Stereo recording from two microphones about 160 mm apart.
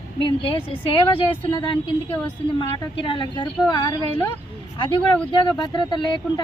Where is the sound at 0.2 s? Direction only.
30° left (ahead or behind).